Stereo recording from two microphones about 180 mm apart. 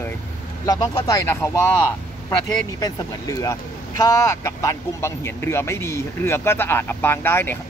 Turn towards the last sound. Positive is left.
turn(degrees=10)  # may be behind; listen again after turning